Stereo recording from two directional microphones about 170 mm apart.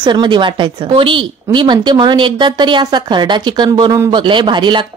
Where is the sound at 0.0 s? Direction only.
25° right (ahead or behind).